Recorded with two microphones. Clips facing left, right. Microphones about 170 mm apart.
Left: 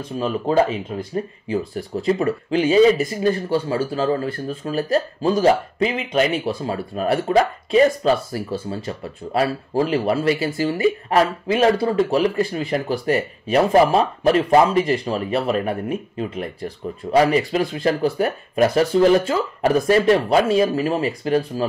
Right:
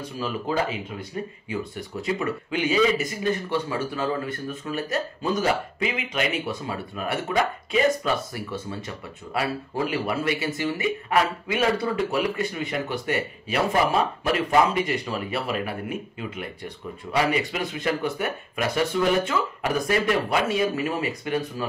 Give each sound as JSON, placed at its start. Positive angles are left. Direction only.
{"t": 0.2, "sound": "speech", "side_deg": 30}